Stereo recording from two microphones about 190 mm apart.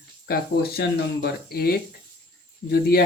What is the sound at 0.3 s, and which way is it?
Speech, 60° left (ahead or behind).